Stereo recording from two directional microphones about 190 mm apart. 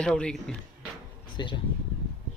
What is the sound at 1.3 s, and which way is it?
Speech, 25° left (ahead or behind).